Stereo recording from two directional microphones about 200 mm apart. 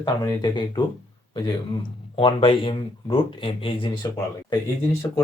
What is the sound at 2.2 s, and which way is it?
Speech, 25° left (ahead or behind).